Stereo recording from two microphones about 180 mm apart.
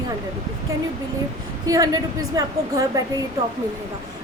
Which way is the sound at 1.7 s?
20° right (ahead or behind).